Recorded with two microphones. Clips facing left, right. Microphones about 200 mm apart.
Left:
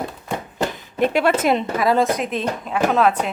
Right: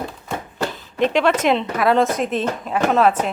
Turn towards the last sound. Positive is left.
turn(degrees=0)  # may be behind; listen again after turning